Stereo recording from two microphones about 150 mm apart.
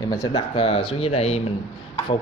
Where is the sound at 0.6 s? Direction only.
35° left (ahead or behind).